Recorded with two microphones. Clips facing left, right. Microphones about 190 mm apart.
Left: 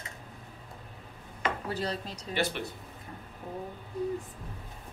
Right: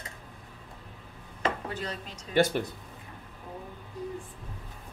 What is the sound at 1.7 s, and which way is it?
Speech, 35° left (ahead or behind).